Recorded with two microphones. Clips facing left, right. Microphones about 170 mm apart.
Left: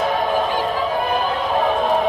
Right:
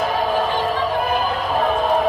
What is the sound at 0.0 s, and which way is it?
Music, centre (ahead or behind).